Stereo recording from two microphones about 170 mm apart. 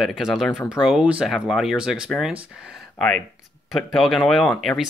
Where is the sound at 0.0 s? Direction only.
Centre (ahead or behind).